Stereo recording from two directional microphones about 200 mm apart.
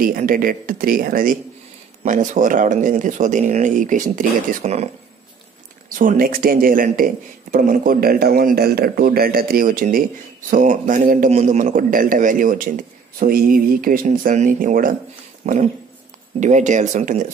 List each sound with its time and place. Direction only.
0.0 s a man's voice: 45° right (ahead or behind)
5.9 s a man's voice: 45° right (ahead or behind)